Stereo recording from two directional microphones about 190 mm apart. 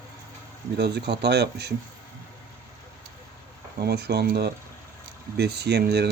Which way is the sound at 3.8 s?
60° right (ahead or behind).